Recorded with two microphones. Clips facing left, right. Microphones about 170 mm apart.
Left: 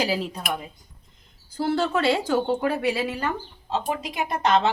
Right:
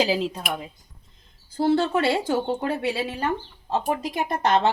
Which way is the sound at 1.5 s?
25° right (ahead or behind).